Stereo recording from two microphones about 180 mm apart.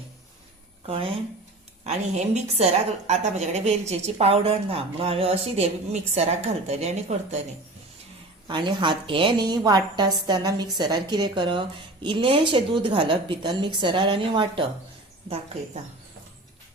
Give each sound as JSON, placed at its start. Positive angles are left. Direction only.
{"t": 0.9, "sound": "a woman's voice", "side_deg": -30}
{"t": 8.4, "sound": "a woman's voice", "side_deg": -25}